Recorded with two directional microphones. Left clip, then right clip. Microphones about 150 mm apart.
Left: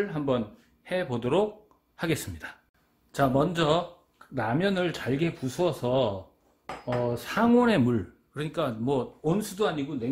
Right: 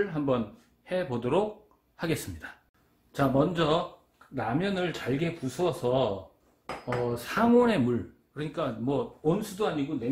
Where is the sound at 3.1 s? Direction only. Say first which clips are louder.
Left 1 dB; 90° left.